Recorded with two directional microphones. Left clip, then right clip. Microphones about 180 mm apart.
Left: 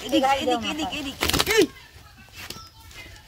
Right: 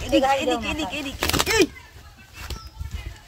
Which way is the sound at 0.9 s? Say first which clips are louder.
Even; 10° right (ahead or behind).